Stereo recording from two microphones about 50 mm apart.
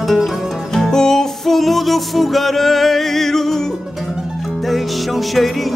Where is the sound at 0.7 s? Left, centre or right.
Centre.